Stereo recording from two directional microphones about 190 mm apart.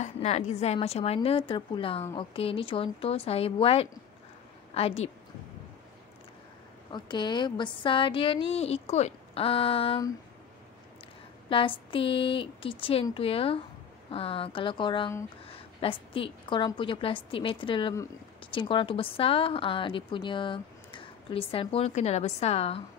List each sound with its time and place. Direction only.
0.0 s a woman's voice: 35° left (ahead or behind)
6.9 s a woman's voice: 25° left (ahead or behind)
11.4 s a woman's voice: 25° left (ahead or behind)